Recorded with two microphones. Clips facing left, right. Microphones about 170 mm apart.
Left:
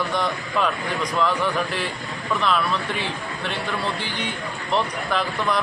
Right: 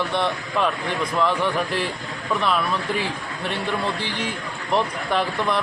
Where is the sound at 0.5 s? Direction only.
5° right (ahead or behind).